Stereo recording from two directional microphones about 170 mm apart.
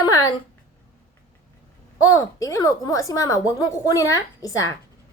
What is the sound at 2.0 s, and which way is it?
Speech, 20° left (ahead or behind).